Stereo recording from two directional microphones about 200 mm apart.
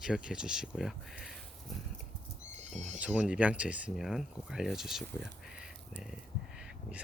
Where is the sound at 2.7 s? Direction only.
35° right (ahead or behind).